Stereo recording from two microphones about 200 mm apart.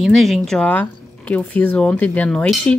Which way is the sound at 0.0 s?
Centre (ahead or behind).